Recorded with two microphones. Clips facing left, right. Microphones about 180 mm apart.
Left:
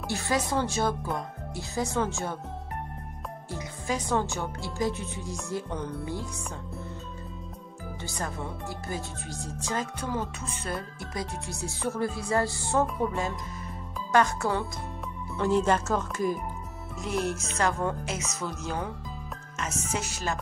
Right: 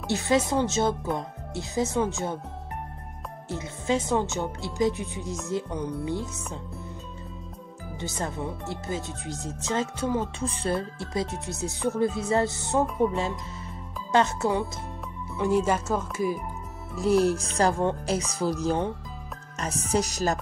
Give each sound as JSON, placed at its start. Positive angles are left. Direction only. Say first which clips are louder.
{"t": 0.1, "sound": "speech", "louder": "right 5 dB", "side_deg": -20}
{"t": 3.4, "sound": "speech", "louder": "right 5 dB", "side_deg": -25}
{"t": 8.0, "sound": "speech", "louder": "right 4 dB", "side_deg": -20}
{"t": 10.4, "sound": "speech", "louder": "right 7 dB", "side_deg": -30}
{"t": 15.3, "sound": "speech", "louder": "right 1 dB", "side_deg": -10}
{"t": 16.9, "sound": "speech", "louder": "right 8 dB", "side_deg": -35}